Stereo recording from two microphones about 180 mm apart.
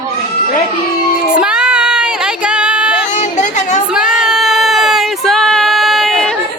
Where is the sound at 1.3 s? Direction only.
5° right (ahead or behind).